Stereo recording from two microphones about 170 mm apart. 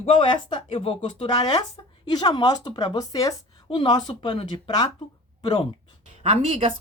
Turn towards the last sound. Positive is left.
turn(degrees=-35)  # may be behind; listen again after turning